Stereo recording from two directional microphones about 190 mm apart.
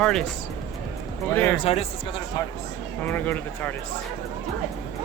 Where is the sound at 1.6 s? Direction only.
30° left (ahead or behind).